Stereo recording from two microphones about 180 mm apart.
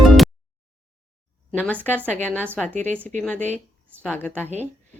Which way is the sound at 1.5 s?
10° left (ahead or behind).